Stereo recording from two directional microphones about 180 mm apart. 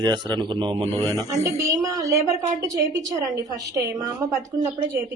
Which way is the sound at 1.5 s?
20° right (ahead or behind).